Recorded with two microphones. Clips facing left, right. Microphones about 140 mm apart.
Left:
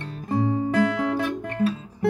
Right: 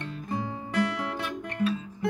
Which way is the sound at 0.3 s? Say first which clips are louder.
Left 11 dB; 35° left (ahead or behind).